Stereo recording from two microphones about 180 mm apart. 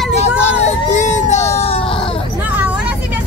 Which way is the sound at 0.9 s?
40° left (ahead or behind).